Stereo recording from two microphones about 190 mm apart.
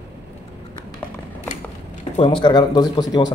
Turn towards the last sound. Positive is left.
turn(degrees=20)  # may be behind; listen again after turning